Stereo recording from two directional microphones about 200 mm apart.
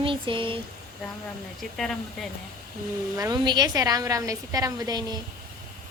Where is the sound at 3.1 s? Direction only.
20° right (ahead or behind).